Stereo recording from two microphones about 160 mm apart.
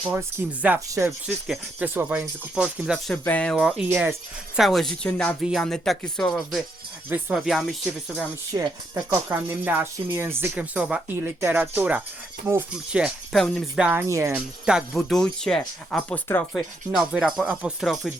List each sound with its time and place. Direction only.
0.1 s speech: 15° right (ahead or behind)
3.1 s speech: 10° left (ahead or behind)
3.5 s speech: 5° right (ahead or behind)
4.6 s speech: centre (ahead or behind)
5.4 s speech: centre (ahead or behind)
8.5 s speech: 20° right (ahead or behind)
14.1 s speech: 20° right (ahead or behind)
14.3 s speech: 5° right (ahead or behind)